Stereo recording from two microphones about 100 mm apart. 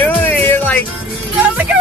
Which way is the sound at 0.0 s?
20° left (ahead or behind).